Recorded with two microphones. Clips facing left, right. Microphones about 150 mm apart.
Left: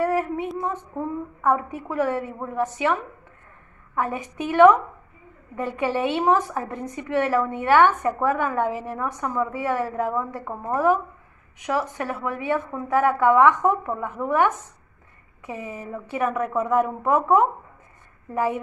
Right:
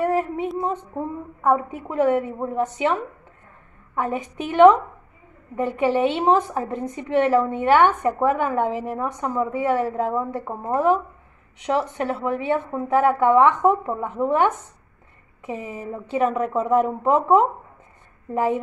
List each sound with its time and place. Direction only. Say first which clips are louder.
0.0 s child singing: right 1 dB; 20° right (ahead or behind)
0.6 s a woman's voice: right 2 dB; 20° right (ahead or behind)